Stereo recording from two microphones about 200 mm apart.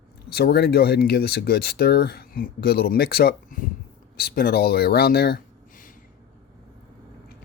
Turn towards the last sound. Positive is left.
turn(degrees=45)  # may be behind; listen again after turning